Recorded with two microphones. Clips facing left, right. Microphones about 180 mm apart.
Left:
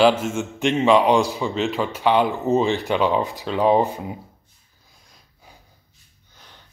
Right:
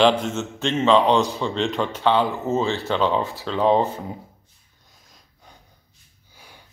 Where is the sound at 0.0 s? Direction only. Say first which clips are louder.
Left 1 dB; 5° left (ahead or behind).